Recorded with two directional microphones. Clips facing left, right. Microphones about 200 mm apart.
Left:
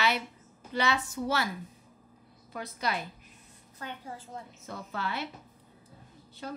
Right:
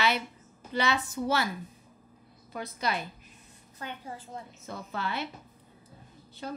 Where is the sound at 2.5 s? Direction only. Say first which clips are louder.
Right 1 dB; 25° right (ahead or behind).